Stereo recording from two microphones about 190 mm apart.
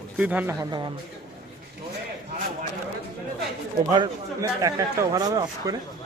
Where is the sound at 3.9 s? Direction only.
20° right (ahead or behind).